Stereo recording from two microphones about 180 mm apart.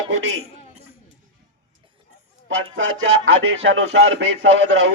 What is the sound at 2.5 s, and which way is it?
Speech, 90° right.